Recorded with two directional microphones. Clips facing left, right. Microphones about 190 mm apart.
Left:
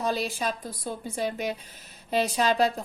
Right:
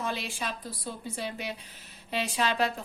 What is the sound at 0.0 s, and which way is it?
A woman's voice, 40° left (ahead or behind).